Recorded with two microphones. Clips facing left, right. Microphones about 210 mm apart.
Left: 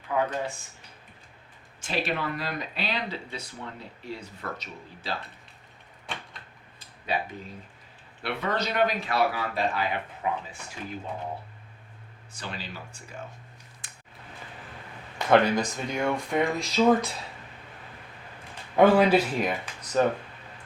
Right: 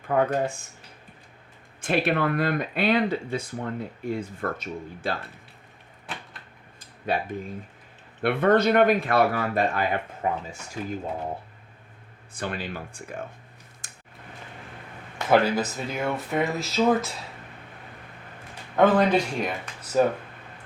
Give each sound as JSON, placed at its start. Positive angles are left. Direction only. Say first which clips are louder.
{"t": 0.1, "sound": "speech", "louder": "right 4 dB", "side_deg": -55}
{"t": 1.8, "sound": "speech", "louder": "right 6 dB", "side_deg": -55}
{"t": 6.1, "sound": "a sound", "louder": "even", "side_deg": -5}
{"t": 6.7, "sound": "a sound", "louder": "right 3 dB", "side_deg": -50}
{"t": 8.2, "sound": "speech", "louder": "right 10 dB", "side_deg": -50}
{"t": 12.3, "sound": "speech", "louder": "right 7 dB", "side_deg": -55}
{"t": 13.8, "sound": "a sound", "louder": "right 2 dB", "side_deg": -45}
{"t": 15.3, "sound": "speech", "louder": "even", "side_deg": -5}
{"t": 18.8, "sound": "speech", "louder": "left 1 dB", "side_deg": 10}